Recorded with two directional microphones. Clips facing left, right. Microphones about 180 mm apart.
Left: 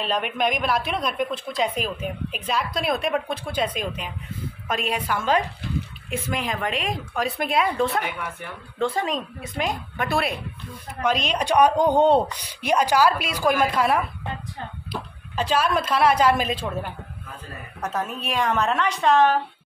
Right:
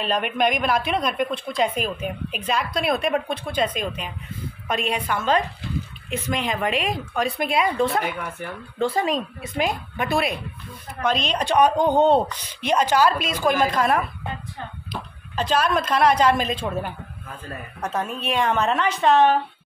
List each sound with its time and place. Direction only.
0.0 s a woman's voice: centre (ahead or behind)
17.8 s a woman's voice: 5° left (ahead or behind)